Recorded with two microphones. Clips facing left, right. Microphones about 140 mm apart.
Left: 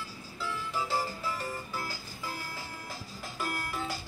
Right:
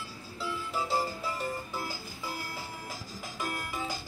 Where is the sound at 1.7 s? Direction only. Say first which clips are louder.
Right 1 dB; 15° right (ahead or behind).